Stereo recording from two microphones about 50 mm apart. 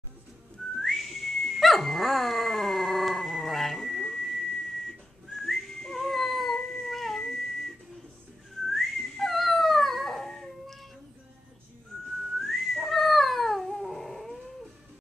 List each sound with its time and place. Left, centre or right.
0.7 s dog: centre
12.4 s cat: centre